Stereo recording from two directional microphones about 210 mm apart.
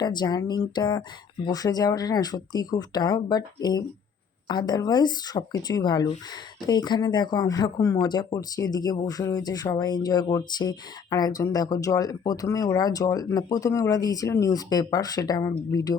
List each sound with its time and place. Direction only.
0.0 s speech: 20° left (ahead or behind)